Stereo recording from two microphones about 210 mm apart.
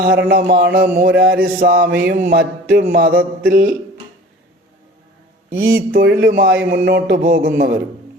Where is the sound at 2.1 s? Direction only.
40° right (ahead or behind).